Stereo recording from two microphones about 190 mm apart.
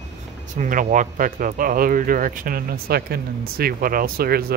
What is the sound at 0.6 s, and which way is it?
Speech, 45° right (ahead or behind).